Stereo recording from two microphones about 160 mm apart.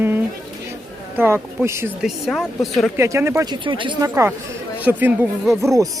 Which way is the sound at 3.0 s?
15° right (ahead or behind).